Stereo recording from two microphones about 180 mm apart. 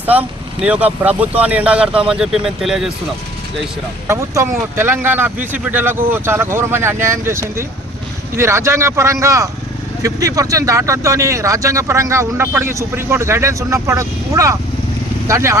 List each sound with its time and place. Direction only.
0.0 s speech: 10° right (ahead or behind)
4.0 s speech: 15° right (ahead or behind)